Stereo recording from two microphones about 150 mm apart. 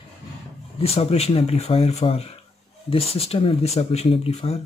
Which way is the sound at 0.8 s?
45° left (ahead or behind).